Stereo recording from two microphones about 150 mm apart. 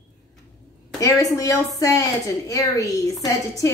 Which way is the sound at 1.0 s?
20° left (ahead or behind).